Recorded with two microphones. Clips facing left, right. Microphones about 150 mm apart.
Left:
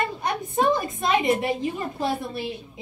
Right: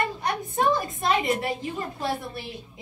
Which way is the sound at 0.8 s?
20° left (ahead or behind).